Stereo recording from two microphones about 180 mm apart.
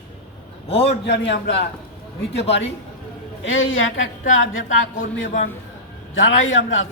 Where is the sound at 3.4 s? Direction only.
90° left.